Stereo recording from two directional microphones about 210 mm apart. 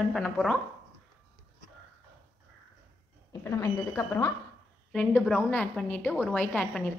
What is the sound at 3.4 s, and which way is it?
A woman's voice, 15° left (ahead or behind).